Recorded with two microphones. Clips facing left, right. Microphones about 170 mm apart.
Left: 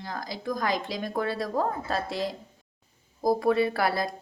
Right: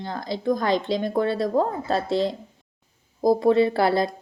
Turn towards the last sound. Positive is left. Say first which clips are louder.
# right 6 dB
turn(degrees=-25)  # may be behind; listen again after turning